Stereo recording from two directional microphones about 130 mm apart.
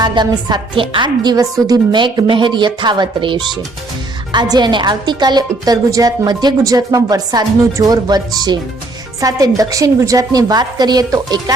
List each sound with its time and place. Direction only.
0.0 s a woman's voice: 35° right (ahead or behind)